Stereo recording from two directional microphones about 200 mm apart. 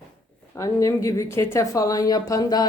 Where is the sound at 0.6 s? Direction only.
15° left (ahead or behind).